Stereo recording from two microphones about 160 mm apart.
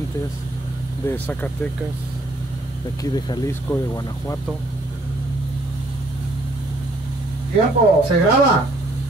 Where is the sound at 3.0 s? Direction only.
25° left (ahead or behind).